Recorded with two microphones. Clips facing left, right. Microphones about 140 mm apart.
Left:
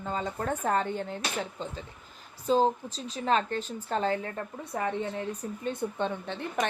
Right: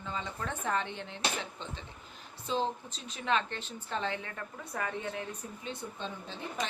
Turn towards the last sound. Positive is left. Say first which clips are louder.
# left 7 dB
turn(degrees=65)  # may be behind; listen again after turning